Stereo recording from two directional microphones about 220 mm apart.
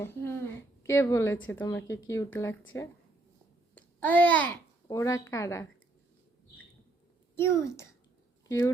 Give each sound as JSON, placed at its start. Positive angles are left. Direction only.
{"t": 0.0, "sound": "a woman's voice", "side_deg": 10}
{"t": 3.8, "sound": "babbling", "side_deg": 5}
{"t": 4.9, "sound": "a woman's voice", "side_deg": 15}
{"t": 7.3, "sound": "a child's voice", "side_deg": 10}